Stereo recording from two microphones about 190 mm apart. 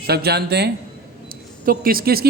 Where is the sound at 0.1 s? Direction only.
55° right (ahead or behind).